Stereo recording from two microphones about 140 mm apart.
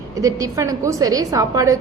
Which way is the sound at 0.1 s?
25° right (ahead or behind).